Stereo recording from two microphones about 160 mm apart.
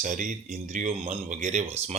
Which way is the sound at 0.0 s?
50° right (ahead or behind).